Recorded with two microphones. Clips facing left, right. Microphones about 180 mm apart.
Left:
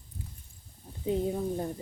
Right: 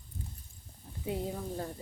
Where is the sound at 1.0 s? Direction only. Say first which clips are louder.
Left 7 dB; 20° left (ahead or behind).